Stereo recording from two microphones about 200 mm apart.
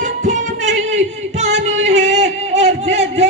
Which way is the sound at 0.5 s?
65° right (ahead or behind).